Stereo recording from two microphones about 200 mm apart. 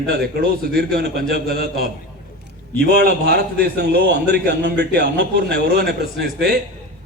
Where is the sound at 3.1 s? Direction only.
55° right (ahead or behind).